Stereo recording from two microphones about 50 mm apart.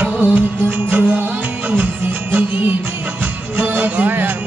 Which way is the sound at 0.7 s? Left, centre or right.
Right.